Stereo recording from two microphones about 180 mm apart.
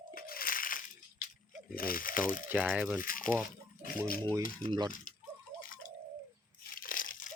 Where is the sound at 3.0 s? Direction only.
50° left (ahead or behind).